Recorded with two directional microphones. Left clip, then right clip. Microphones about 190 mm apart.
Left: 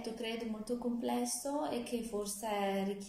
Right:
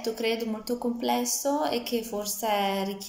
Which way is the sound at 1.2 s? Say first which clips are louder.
Right 10 dB; 30° right (ahead or behind).